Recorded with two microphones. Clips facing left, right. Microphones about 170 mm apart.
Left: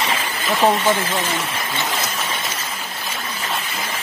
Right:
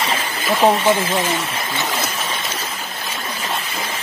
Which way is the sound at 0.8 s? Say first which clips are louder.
Right 3 dB; 15° right (ahead or behind).